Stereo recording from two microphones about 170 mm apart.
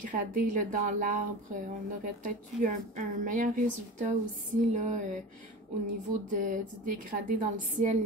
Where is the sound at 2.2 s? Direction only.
50° right (ahead or behind).